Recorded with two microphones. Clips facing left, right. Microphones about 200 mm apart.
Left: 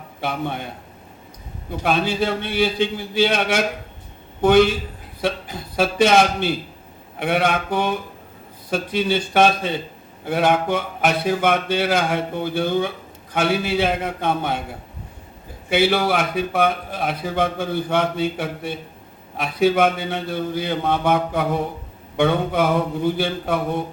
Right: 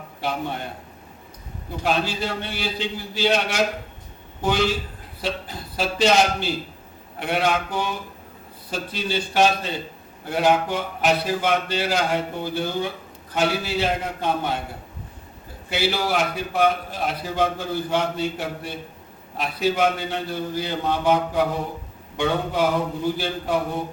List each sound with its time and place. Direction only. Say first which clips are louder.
0.2 s a man's voice: left 2 dB; 55° left (ahead or behind)
1.8 s a man's voice: left 4 dB; 55° left (ahead or behind)
5.7 s a man's voice: left 3 dB; 55° left (ahead or behind)
15.7 s a man's voice: left 5 dB; 55° left (ahead or behind)